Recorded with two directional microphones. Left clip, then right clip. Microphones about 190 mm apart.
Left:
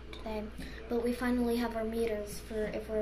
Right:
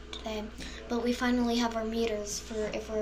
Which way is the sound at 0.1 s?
5° left (ahead or behind).